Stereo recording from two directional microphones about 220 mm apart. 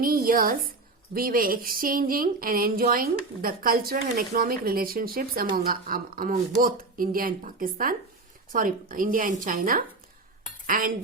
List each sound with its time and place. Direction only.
0.0 s a woman's voice: 40° right (ahead or behind)